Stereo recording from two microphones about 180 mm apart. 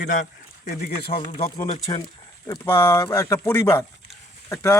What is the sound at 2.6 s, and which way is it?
A man's voice, 20° left (ahead or behind).